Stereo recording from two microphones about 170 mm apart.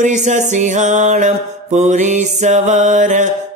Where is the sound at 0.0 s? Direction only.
45° right (ahead or behind).